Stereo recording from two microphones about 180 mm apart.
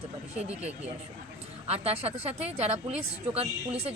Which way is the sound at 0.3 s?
35° right (ahead or behind).